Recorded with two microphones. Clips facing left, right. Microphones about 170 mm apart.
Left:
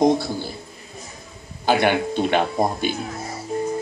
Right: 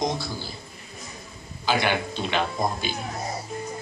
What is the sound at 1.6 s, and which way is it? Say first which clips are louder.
Speech: left 6 dB; 55° left (ahead or behind).